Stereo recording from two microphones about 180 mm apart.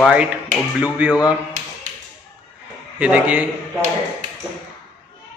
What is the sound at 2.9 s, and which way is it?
Speech, 5° right (ahead or behind).